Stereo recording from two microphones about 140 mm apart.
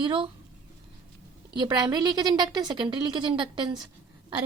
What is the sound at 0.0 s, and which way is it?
Speech, 35° right (ahead or behind).